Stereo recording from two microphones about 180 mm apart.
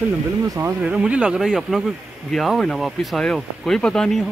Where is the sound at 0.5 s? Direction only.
10° right (ahead or behind).